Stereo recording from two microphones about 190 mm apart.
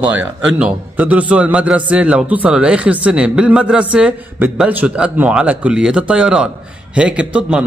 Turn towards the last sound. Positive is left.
turn(degrees=-5)  # may be behind; listen again after turning